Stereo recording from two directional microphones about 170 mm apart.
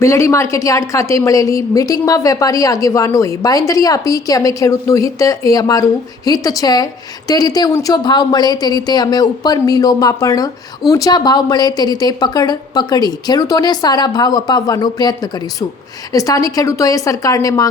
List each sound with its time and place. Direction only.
0.0 s speech: 15° left (ahead or behind)